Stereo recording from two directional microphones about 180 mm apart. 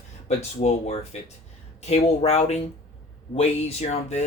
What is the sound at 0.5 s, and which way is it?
Speech, 40° left (ahead or behind).